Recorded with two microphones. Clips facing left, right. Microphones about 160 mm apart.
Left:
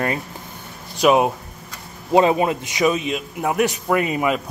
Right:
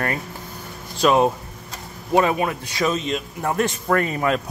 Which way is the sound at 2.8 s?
5° left (ahead or behind).